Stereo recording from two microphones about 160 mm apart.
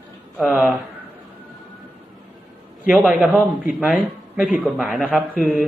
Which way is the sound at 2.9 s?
Centre (ahead or behind).